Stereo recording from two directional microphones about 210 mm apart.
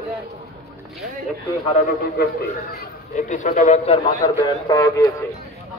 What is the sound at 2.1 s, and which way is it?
Speech, 50° left (ahead or behind).